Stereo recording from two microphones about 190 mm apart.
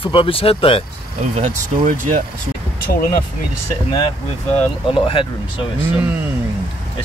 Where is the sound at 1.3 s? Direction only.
35° right (ahead or behind).